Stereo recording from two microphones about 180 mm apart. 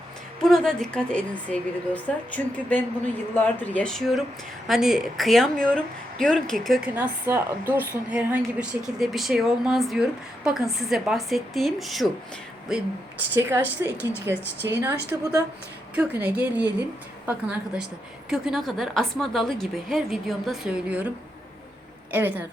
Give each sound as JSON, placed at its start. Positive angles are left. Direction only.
{"t": 0.4, "sound": "a woman's voice", "side_deg": 0}
{"t": 6.9, "sound": "a woman's voice", "side_deg": -10}
{"t": 22.1, "sound": "speech", "side_deg": -10}